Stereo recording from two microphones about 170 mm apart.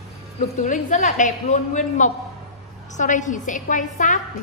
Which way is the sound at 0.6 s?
50° left (ahead or behind).